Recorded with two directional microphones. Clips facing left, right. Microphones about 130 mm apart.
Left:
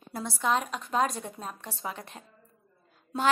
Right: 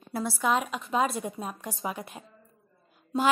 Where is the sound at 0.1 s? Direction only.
5° right (ahead or behind).